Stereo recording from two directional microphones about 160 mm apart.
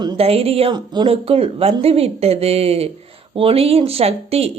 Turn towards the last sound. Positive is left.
turn(degrees=-40)  # may be behind; listen again after turning